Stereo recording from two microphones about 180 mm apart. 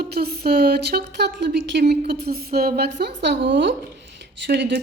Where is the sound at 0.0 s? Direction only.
60° right (ahead or behind); by 3.8 s 80° right.